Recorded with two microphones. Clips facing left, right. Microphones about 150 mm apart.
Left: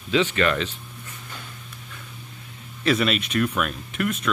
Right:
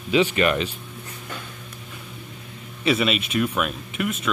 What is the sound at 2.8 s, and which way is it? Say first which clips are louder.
Speech: even; 5° right (ahead or behind).